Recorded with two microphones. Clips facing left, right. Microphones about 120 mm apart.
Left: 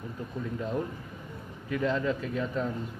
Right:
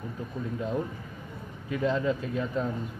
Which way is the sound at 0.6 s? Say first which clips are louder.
Right 1 dB; 15° right (ahead or behind).